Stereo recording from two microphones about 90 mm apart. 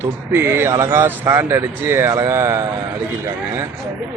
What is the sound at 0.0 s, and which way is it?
A man's voice, 25° right (ahead or behind).